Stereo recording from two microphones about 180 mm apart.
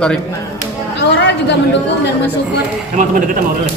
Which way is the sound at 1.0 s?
70° left (ahead or behind).